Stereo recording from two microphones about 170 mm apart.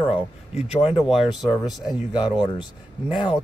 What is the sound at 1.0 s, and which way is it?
Speech, centre (ahead or behind).